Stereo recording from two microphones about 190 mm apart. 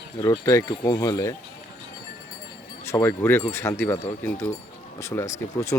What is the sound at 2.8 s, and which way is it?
Speech, 15° left (ahead or behind).